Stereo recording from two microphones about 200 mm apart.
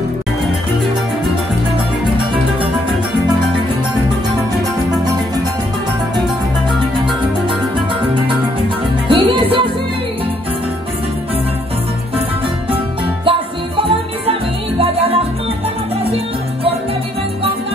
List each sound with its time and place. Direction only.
9.1 s music: 25° right (ahead or behind)
13.2 s music: 25° right (ahead or behind)